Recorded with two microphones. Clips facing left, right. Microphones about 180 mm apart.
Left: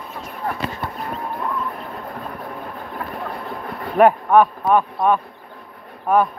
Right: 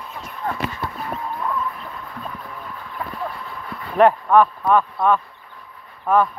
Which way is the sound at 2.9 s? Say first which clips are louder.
Right 1 dB; 50° left (ahead or behind).